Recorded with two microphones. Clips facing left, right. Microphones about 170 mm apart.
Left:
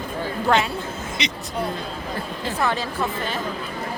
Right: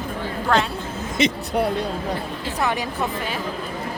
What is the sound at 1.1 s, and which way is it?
Speech, 50° right (ahead or behind).